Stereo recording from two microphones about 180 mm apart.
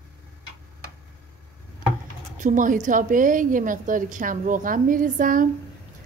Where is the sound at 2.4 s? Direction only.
45° right (ahead or behind).